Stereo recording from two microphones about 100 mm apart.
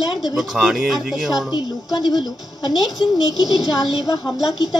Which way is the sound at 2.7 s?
Centre (ahead or behind).